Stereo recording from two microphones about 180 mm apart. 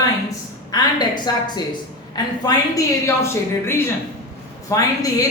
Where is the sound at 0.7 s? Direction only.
20° left (ahead or behind).